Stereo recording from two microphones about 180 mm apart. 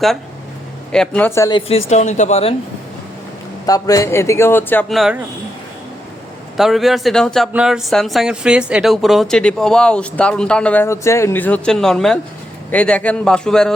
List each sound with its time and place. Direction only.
0.9 s speech: 10° left (ahead or behind)
1.5 s speech: 30° left (ahead or behind)
3.7 s speech: 20° left (ahead or behind)
4.9 s speech: centre (ahead or behind)
6.6 s speech: centre (ahead or behind)